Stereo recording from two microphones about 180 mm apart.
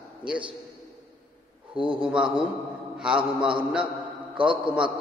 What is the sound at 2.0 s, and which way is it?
A man's voice, 5° right (ahead or behind).